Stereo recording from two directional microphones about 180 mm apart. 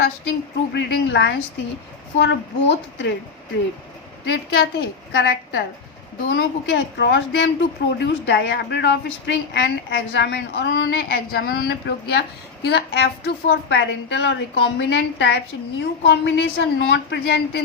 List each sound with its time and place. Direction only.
0.7 s a woman's voice: 75° left (ahead or behind)
4.3 s a woman's voice: 65° left (ahead or behind)